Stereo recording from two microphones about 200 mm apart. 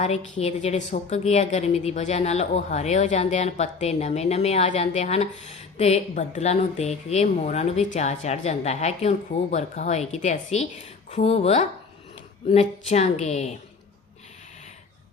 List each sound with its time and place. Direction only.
0.0 s a woman's voice: 30° left (ahead or behind)